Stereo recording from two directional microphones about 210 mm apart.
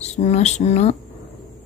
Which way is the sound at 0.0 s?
30° left (ahead or behind).